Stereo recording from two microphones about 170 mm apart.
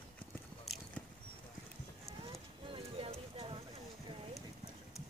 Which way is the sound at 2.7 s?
35° right (ahead or behind).